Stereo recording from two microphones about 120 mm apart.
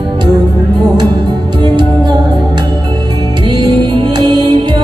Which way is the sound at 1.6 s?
40° right (ahead or behind).